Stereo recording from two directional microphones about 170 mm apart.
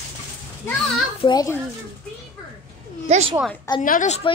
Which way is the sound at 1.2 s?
20° left (ahead or behind).